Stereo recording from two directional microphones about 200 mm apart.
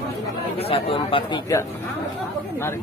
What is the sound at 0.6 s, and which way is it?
A man's voice, 30° left (ahead or behind).